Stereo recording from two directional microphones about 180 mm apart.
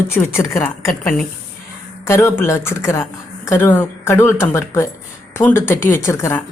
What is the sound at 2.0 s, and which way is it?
A woman's voice, 15° left (ahead or behind).